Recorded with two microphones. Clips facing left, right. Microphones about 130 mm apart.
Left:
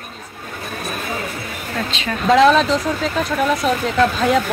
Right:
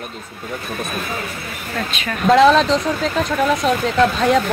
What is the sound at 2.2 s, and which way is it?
Speech, centre (ahead or behind).